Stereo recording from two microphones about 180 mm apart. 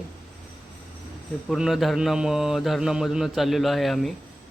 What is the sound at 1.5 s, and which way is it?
Speech, centre (ahead or behind).